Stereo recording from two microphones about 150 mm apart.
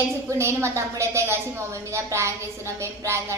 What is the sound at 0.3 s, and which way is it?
A woman's voice, 20° right (ahead or behind).